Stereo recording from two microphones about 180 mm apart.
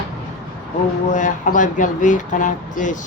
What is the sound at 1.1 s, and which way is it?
Speech, 45° left (ahead or behind).